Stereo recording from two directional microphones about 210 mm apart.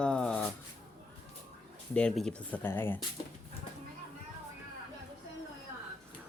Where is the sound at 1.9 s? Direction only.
5° left (ahead or behind).